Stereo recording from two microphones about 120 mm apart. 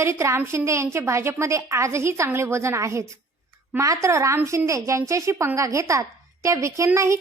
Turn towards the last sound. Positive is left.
turn(degrees=-25)  # may be behind; listen again after turning